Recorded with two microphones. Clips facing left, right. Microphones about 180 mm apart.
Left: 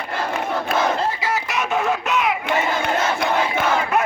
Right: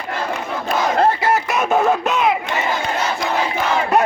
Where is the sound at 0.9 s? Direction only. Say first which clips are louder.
Right 7 dB; 60° right (ahead or behind).